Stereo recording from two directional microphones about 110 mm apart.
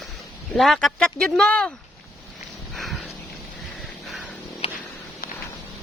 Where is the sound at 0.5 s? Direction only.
5° left (ahead or behind).